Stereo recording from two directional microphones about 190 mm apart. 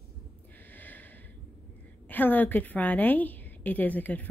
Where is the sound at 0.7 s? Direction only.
10° left (ahead or behind).